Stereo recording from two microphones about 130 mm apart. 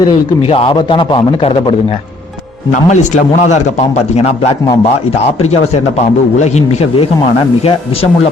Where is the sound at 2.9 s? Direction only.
70° left (ahead or behind).